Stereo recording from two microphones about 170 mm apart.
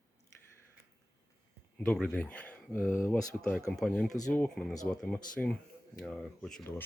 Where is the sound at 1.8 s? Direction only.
5° left (ahead or behind).